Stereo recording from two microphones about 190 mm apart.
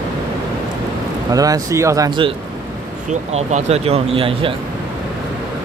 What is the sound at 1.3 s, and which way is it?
Speech, 20° right (ahead or behind).